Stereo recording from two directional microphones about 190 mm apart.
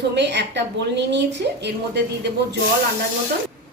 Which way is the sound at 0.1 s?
65° right (ahead or behind).